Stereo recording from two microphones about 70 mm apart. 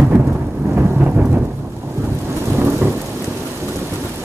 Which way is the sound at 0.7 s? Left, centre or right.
Centre.